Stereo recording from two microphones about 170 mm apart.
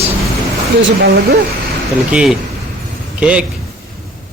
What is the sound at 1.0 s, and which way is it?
Speech, 65° right (ahead or behind).